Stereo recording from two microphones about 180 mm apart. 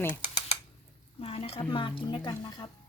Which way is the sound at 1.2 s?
30° left (ahead or behind).